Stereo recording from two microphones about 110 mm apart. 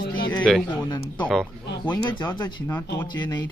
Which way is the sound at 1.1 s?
10° left (ahead or behind).